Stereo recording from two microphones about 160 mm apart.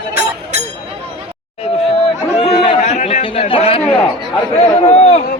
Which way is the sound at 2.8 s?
45° left (ahead or behind).